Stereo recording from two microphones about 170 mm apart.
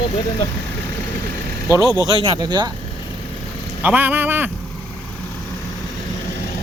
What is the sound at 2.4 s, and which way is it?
Speech, 25° right (ahead or behind).